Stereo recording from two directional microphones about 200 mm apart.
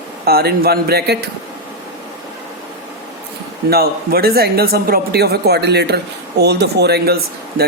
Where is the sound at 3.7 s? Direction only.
50° right (ahead or behind).